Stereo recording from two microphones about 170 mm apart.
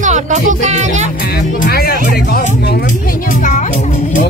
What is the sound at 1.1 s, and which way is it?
Music, 65° left (ahead or behind).